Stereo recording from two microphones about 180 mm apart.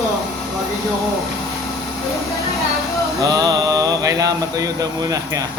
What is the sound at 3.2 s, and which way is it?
Speech, 20° right (ahead or behind).